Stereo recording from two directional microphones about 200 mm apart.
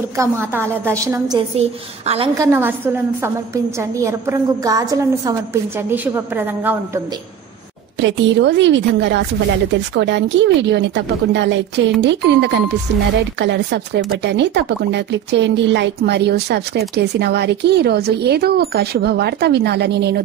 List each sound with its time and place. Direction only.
0.2 s a woman's voice: 10° right (ahead or behind)
1.5 s a woman's voice: 30° right (ahead or behind)
2.3 s a woman's voice: 15° right (ahead or behind)
8.0 s speech: 65° right (ahead or behind)